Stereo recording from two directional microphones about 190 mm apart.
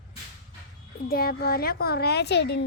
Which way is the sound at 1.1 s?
50° left (ahead or behind).